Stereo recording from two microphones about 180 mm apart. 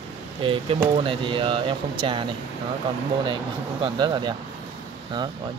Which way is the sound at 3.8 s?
25° right (ahead or behind).